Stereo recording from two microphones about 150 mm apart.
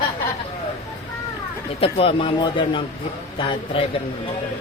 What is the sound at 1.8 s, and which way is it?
Speech, 35° left (ahead or behind).